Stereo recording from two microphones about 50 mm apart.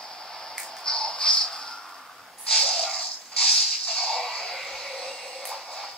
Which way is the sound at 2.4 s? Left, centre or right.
Centre.